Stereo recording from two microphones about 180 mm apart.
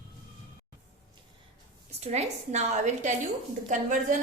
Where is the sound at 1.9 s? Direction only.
35° right (ahead or behind).